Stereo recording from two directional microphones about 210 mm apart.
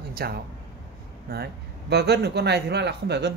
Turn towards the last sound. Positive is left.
turn(degrees=-55)  # may be behind; listen again after turning